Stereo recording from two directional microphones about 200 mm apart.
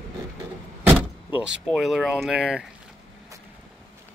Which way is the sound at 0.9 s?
10° right (ahead or behind).